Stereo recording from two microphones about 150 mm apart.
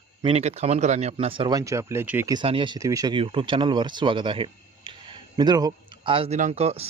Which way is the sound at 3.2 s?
35° right (ahead or behind).